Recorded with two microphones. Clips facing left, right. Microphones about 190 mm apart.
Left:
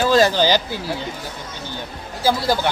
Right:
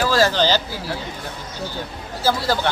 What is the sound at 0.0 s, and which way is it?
Speech, 20° left (ahead or behind).